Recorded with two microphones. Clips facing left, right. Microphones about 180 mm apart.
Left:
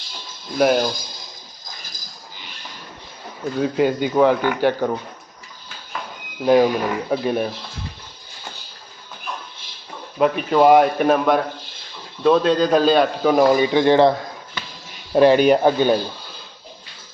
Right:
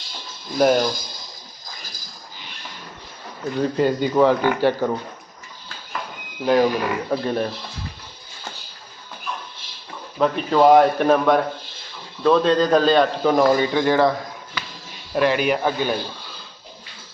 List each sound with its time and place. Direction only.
0.6 s speech: 5° left (ahead or behind)
3.6 s speech: 5° left (ahead or behind)
6.4 s a man's voice: 10° left (ahead or behind)
10.2 s a man's voice: 10° left (ahead or behind)
15.1 s speech: 30° left (ahead or behind)